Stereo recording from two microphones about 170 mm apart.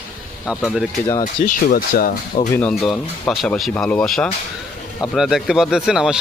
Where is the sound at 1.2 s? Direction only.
55° left (ahead or behind).